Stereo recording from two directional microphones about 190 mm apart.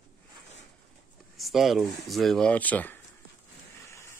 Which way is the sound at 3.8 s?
15° left (ahead or behind).